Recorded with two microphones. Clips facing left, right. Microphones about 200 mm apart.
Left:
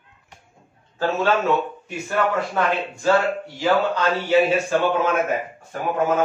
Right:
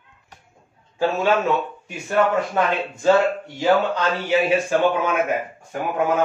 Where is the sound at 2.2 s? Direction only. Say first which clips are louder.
Right 2 dB; 25° right (ahead or behind).